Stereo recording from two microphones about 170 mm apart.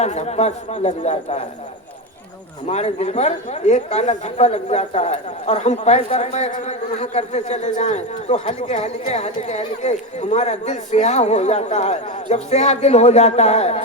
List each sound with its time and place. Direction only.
0.0 s speech: 40° left (ahead or behind)
2.6 s speech: 40° left (ahead or behind)